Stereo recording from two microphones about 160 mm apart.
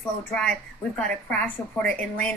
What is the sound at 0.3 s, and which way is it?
A woman's voice, 5° left (ahead or behind).